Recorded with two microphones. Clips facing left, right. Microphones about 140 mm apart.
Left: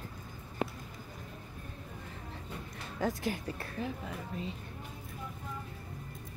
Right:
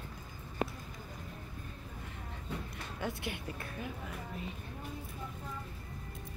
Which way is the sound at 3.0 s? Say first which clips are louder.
Left 6 dB; 40° left (ahead or behind).